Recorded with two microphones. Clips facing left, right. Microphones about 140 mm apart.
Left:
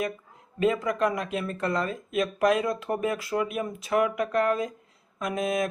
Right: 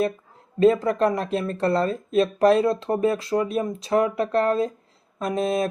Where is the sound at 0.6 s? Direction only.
35° right (ahead or behind).